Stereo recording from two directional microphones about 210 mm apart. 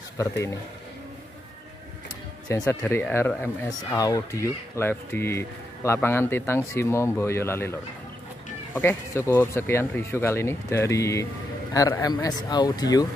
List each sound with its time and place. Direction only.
2.4 s speech: 15° left (ahead or behind)
8.7 s speech: 10° left (ahead or behind)